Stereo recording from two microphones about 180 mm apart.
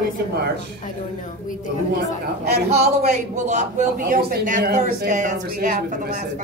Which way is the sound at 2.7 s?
35° right (ahead or behind).